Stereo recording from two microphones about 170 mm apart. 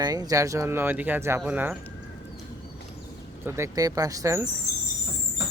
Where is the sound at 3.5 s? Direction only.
15° right (ahead or behind).